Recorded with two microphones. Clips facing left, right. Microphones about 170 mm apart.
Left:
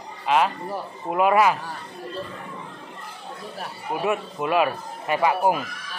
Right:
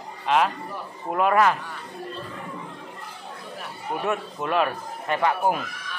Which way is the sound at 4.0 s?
10° left (ahead or behind).